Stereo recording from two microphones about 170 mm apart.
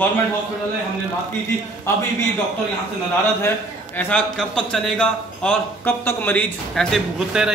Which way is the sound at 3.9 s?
5° left (ahead or behind).